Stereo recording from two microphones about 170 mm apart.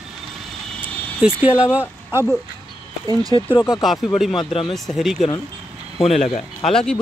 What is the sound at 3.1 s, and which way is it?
Speech, 20° right (ahead or behind).